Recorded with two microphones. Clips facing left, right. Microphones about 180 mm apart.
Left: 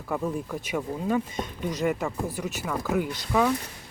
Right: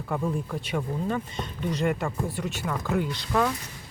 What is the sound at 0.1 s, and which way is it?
Speech, 5° left (ahead or behind).